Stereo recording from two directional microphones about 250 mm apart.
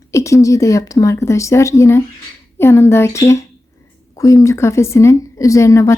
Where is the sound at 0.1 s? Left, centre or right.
Centre.